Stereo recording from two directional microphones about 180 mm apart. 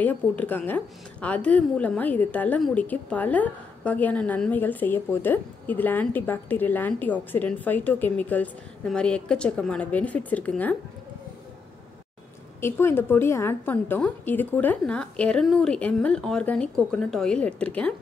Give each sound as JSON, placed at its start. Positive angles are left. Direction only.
{"t": 0.0, "sound": "a woman's voice", "side_deg": 10}
{"t": 12.5, "sound": "a woman's voice", "side_deg": 15}